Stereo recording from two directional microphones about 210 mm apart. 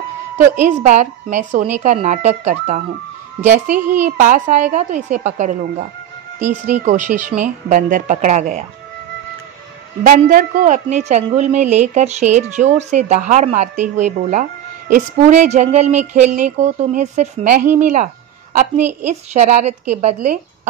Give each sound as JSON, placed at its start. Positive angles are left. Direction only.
{"t": 0.8, "sound": "a woman's voice", "side_deg": -35}
{"t": 10.0, "sound": "a woman's voice", "side_deg": -40}
{"t": 19.3, "sound": "a woman's voice", "side_deg": -35}